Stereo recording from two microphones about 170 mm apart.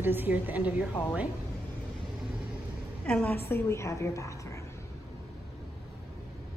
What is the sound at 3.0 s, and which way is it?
A woman's voice, 10° left (ahead or behind).